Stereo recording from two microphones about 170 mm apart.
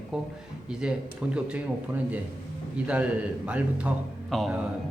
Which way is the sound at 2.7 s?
5° right (ahead or behind).